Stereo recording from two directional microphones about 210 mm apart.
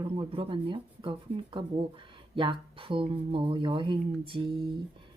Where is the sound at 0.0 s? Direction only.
25° right (ahead or behind).